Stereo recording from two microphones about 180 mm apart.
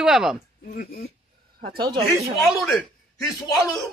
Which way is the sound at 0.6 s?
55° left (ahead or behind).